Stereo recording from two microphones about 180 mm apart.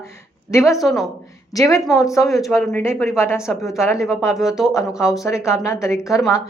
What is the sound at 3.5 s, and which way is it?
Speech, centre (ahead or behind).